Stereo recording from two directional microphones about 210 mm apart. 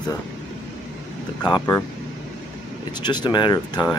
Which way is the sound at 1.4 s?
20° left (ahead or behind).